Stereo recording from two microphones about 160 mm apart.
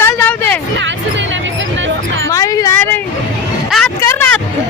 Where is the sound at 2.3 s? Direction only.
20° left (ahead or behind).